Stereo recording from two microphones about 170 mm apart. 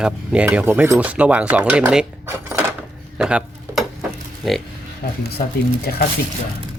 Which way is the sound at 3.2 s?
5° right (ahead or behind).